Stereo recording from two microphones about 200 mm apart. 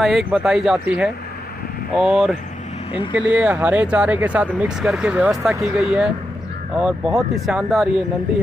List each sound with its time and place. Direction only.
0.0 s speech: centre (ahead or behind)
2.9 s speech: 25° left (ahead or behind)
3.2 s speech: 5° right (ahead or behind)